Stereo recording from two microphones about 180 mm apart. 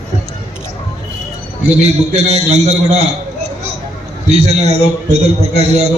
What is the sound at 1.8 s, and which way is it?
A man's voice, 35° right (ahead or behind).